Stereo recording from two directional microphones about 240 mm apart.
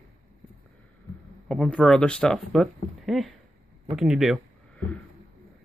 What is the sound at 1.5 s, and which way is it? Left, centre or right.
Speech, centre.